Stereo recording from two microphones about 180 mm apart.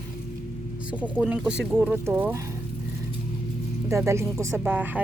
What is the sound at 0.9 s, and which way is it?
Speech, 10° right (ahead or behind).